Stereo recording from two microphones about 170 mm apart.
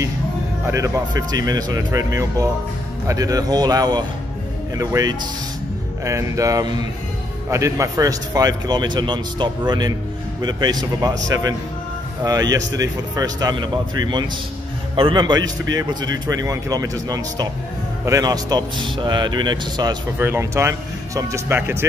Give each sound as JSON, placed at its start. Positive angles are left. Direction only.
{"t": 0.7, "sound": "speech", "side_deg": -15}
{"t": 20.2, "sound": "speech", "side_deg": -15}